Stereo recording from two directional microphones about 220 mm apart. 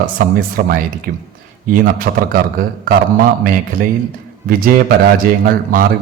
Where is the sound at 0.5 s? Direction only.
40° right (ahead or behind).